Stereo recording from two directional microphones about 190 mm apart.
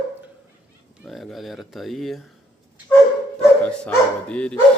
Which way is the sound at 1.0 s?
Centre (ahead or behind).